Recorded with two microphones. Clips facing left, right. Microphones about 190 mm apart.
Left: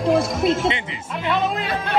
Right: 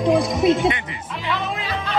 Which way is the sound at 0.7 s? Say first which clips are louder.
Left 2 dB; 25° left (ahead or behind).